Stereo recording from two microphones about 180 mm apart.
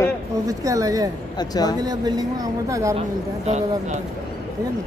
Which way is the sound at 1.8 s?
20° right (ahead or behind).